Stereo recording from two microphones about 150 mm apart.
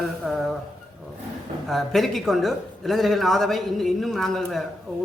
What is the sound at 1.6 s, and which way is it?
A man's voice, centre (ahead or behind).